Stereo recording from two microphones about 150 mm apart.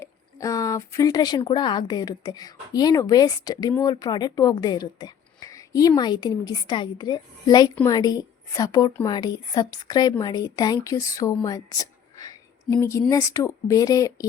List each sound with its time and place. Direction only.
0.0 s a woman's voice: 20° left (ahead or behind)